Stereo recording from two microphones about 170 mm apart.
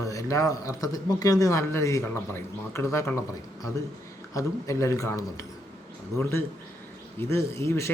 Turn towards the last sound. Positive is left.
turn(degrees=15)  # may be behind; listen again after turning